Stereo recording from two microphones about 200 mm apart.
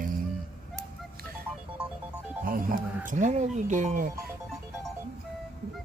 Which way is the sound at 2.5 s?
45° right (ahead or behind).